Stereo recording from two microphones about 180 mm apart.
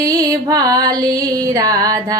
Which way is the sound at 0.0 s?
20° right (ahead or behind).